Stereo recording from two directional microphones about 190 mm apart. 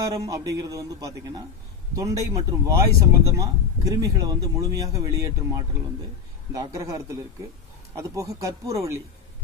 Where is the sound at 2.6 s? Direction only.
15° right (ahead or behind).